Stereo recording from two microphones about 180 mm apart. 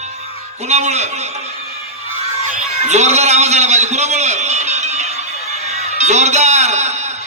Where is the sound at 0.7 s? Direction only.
40° right (ahead or behind).